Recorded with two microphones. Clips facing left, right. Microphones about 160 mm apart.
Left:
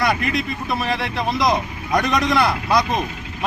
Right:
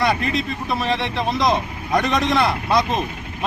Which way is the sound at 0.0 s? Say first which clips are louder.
Even; 30° right (ahead or behind).